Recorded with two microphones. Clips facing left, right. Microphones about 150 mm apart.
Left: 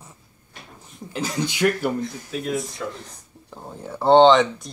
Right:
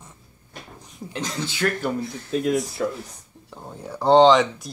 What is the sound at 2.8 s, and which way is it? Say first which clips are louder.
Speech: right 6 dB; 40° right (ahead or behind).